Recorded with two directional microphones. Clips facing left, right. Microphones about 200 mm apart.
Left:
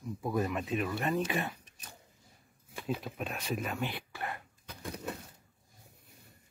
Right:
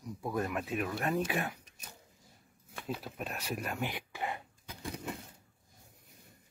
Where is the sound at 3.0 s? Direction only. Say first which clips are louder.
Left 2 dB; 5° right (ahead or behind).